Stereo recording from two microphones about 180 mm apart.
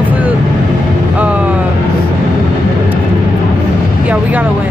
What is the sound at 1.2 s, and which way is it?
Music, 10° right (ahead or behind).